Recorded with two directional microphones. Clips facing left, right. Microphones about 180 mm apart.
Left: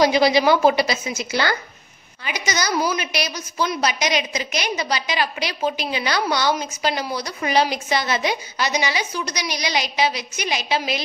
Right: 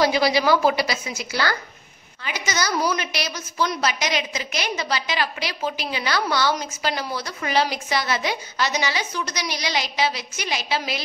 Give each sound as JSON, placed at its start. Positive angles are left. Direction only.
{"t": 0.0, "sound": "a woman's voice", "side_deg": 20}